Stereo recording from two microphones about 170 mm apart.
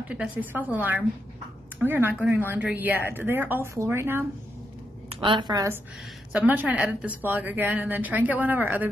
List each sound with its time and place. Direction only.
0.1 s speech: 10° right (ahead or behind)
5.1 s a woman's voice: 30° right (ahead or behind)
6.3 s speech: 10° right (ahead or behind)